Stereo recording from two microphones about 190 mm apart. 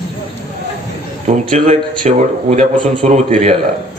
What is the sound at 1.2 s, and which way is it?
A man's voice, 40° right (ahead or behind).